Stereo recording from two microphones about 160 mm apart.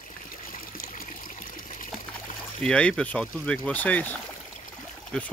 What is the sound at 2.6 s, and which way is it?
Speech, 5° left (ahead or behind).